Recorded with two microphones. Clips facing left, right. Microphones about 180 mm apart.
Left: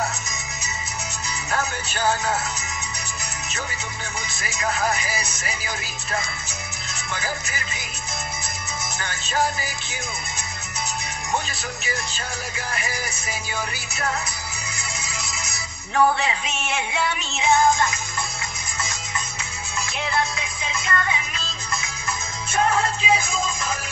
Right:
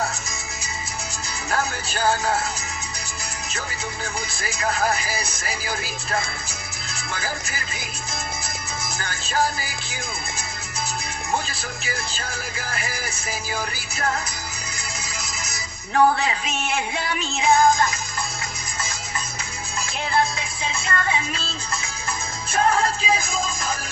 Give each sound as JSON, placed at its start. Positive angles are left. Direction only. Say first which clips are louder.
{"t": 1.6, "sound": "music", "louder": "right 1 dB", "side_deg": -35}
{"t": 4.4, "sound": "music", "louder": "right 1 dB", "side_deg": -35}
{"t": 7.1, "sound": "music", "louder": "even", "side_deg": -35}
{"t": 9.0, "sound": "music", "louder": "even", "side_deg": -35}
{"t": 11.3, "sound": "music", "louder": "even", "side_deg": -35}
{"t": 15.9, "sound": "music", "louder": "right 1 dB", "side_deg": -40}
{"t": 20.1, "sound": "music", "louder": "right 4 dB", "side_deg": -35}